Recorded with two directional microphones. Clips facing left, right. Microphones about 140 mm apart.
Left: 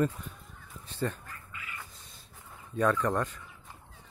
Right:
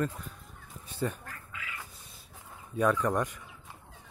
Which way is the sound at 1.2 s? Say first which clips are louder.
Right 2 dB; 90° right.